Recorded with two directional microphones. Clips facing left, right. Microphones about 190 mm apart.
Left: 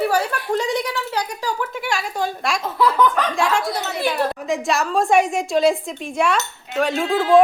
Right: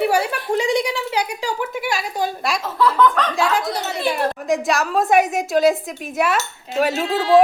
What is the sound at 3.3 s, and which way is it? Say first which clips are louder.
A woman's voice: even; centre (ahead or behind).